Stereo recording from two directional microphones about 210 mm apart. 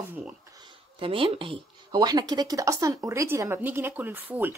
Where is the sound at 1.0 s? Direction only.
25° right (ahead or behind).